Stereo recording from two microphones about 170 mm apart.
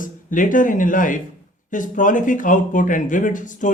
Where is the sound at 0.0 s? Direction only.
50° left (ahead or behind).